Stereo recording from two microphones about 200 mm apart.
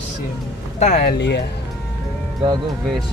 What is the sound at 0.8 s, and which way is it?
Speech, 35° left (ahead or behind).